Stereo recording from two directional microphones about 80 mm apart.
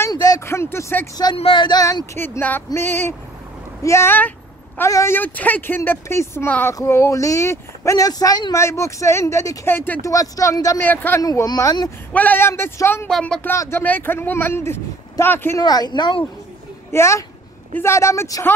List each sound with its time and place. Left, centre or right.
0.1 s a sound: left
0.5 s speech: left
1.1 s speech: left
2.1 s speech: left
8.5 s speech: left
9.7 s speech: left
10.0 s speech: left
10.8 s speech: left
11.1 s speech: left
12.1 s speech: centre
12.4 s speech: left
15.6 s speech: left
16.9 s speech: left